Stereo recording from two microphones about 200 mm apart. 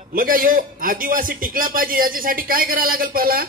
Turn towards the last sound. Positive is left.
turn(degrees=-50)  # may be behind; listen again after turning